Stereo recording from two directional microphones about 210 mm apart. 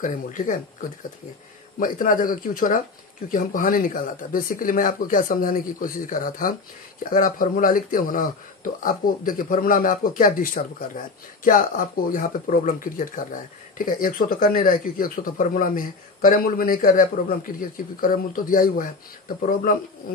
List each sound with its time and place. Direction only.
0.0 s speech: 40° left (ahead or behind)